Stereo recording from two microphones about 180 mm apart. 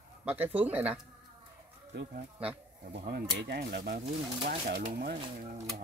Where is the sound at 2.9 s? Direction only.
65° right (ahead or behind).